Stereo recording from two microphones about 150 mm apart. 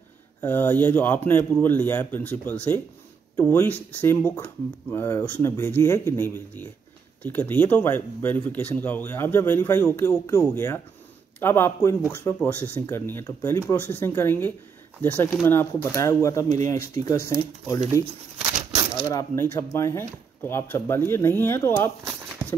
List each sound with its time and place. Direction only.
0.4 s speech: 15° left (ahead or behind)
19.0 s speech: 20° left (ahead or behind)